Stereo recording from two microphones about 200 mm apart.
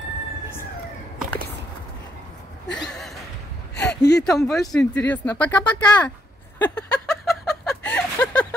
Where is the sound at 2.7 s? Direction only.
5° left (ahead or behind).